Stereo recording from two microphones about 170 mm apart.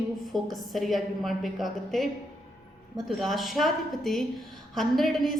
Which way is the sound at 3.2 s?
Centre (ahead or behind).